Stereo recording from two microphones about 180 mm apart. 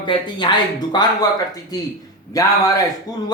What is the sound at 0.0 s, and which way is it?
A man's voice, 25° left (ahead or behind).